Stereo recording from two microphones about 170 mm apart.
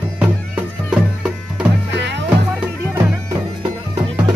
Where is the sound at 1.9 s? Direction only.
90° right.